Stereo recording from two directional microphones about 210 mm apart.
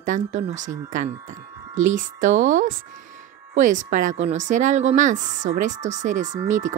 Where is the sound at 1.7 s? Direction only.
35° right (ahead or behind).